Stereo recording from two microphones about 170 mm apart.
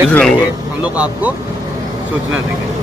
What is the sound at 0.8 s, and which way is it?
Speech, 5° right (ahead or behind).